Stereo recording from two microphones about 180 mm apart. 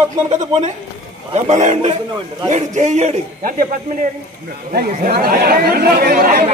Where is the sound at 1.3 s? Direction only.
40° right (ahead or behind).